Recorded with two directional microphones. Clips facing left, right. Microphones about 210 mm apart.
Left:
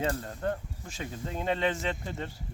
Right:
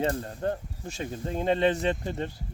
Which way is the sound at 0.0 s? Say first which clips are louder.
Right 3 dB; 30° right (ahead or behind).